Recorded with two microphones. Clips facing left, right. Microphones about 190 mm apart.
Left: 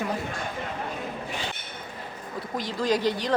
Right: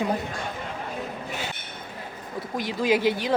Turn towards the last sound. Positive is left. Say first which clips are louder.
# right 2 dB
turn(degrees=-5)  # may be behind; listen again after turning